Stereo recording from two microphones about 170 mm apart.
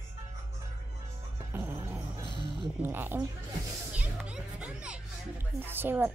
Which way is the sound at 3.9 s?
5° right (ahead or behind).